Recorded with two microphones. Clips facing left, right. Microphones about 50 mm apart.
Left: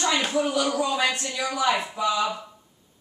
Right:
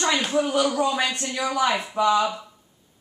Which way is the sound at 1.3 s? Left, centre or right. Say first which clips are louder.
Right 1 dB; right.